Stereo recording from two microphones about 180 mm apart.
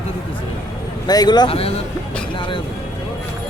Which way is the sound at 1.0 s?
20° left (ahead or behind).